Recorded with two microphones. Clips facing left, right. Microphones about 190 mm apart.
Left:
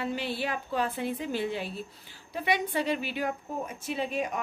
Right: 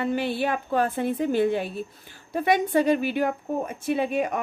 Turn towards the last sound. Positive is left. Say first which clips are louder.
# right 6 dB
turn(degrees=-55)  # may be behind; listen again after turning